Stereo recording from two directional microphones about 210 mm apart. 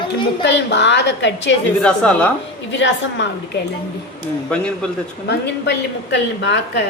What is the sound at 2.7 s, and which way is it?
Speech, 60° left (ahead or behind).